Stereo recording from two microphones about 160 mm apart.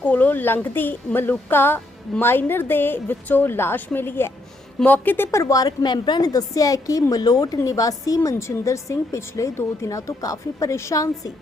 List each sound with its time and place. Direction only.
0.0 s a woman's voice: 10° left (ahead or behind)